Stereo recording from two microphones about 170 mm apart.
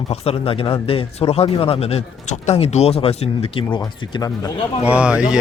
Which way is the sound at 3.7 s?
20° left (ahead or behind).